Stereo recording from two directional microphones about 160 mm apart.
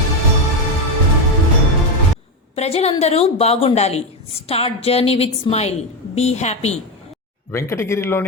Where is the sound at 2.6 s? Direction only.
40° left (ahead or behind).